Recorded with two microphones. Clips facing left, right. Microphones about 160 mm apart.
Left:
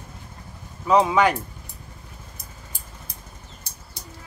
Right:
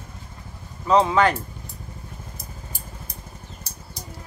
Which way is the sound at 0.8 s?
10° left (ahead or behind).